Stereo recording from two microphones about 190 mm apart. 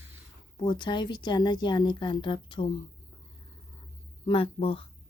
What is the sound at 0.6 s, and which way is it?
Speech, 25° left (ahead or behind).